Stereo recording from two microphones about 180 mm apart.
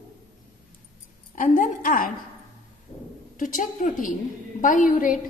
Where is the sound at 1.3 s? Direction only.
45° left (ahead or behind).